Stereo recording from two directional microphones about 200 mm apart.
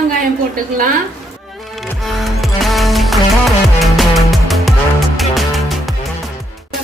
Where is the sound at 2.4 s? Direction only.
Centre (ahead or behind).